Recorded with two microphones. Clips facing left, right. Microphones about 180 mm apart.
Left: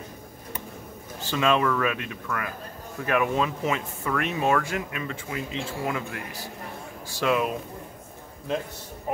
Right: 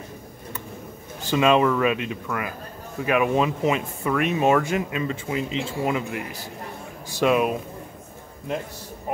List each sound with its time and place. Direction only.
1.2 s a man's voice: 15° right (ahead or behind)